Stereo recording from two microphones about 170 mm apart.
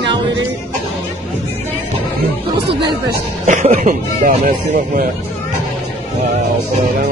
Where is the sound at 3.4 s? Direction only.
45° right (ahead or behind).